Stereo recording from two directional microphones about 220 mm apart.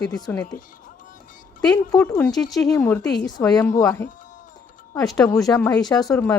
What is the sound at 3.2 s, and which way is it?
Speech, 15° left (ahead or behind).